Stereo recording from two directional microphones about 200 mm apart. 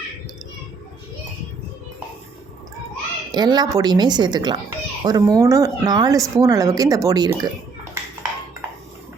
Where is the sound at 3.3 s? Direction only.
20° right (ahead or behind).